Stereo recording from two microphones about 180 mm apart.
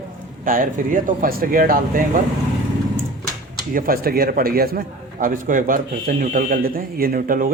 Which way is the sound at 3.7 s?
55° right (ahead or behind).